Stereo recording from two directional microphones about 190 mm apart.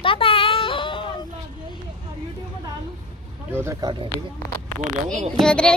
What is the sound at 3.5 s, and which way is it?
Speech, 15° right (ahead or behind).